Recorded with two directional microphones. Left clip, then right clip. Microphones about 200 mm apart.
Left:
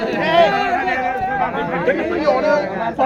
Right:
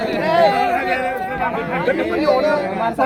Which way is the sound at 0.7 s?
25° left (ahead or behind).